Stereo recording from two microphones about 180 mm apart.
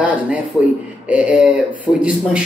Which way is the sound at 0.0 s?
10° right (ahead or behind).